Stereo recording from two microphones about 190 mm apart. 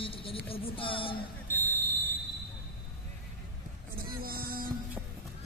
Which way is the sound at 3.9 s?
50° right (ahead or behind).